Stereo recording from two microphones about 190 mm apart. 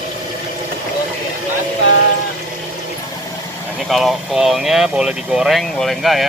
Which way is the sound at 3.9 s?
Centre (ahead or behind).